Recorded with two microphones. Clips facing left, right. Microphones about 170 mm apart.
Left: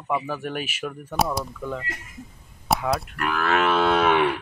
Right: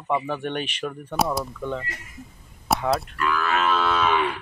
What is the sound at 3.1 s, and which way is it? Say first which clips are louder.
Moo: left 1 dB; 60° left (ahead or behind).